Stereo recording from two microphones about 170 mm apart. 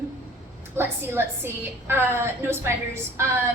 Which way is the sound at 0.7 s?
15° right (ahead or behind).